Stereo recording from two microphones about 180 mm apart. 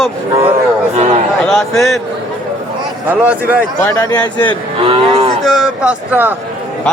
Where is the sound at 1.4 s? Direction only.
5° left (ahead or behind).